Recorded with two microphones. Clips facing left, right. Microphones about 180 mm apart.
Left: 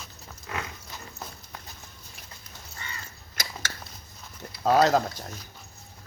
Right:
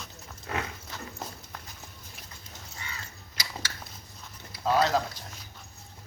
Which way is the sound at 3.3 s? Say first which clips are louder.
Left 2 dB; 50° left (ahead or behind).